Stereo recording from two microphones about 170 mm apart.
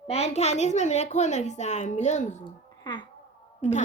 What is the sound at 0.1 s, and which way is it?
A woman's voice, 40° left (ahead or behind).